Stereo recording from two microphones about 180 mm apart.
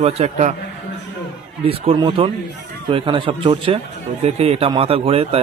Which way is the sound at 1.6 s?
30° right (ahead or behind).